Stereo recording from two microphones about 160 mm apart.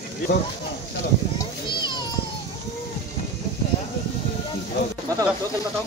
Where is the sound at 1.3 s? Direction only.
30° left (ahead or behind).